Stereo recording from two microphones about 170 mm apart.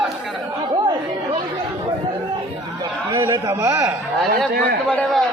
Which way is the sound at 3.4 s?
15° right (ahead or behind).